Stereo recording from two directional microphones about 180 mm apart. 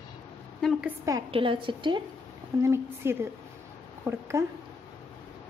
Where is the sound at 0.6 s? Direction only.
Centre (ahead or behind).